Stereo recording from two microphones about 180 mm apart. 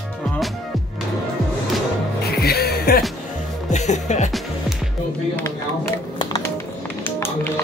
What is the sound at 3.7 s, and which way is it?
Speech, 40° left (ahead or behind).